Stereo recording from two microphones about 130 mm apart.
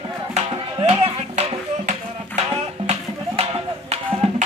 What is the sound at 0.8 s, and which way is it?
Music, 55° right (ahead or behind).